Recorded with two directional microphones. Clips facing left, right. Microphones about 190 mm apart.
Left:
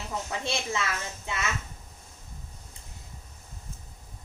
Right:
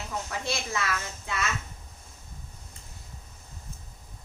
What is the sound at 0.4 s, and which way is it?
Speech, 25° left (ahead or behind).